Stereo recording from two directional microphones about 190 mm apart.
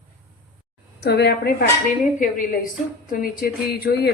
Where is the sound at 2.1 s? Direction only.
45° left (ahead or behind).